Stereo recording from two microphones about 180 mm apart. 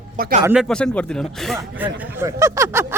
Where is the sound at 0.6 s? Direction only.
5° left (ahead or behind).